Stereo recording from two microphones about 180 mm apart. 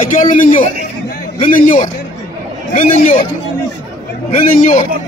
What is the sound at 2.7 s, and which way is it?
Speech, 45° left (ahead or behind).